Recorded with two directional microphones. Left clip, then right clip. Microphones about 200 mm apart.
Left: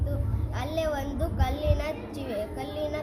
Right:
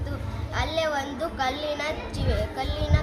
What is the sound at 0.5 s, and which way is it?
A woman's voice, 15° left (ahead or behind).